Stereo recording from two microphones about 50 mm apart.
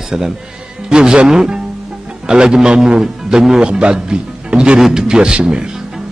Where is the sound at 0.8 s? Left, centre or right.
Centre.